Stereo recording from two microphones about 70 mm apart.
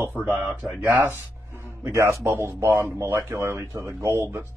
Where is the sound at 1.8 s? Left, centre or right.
Right.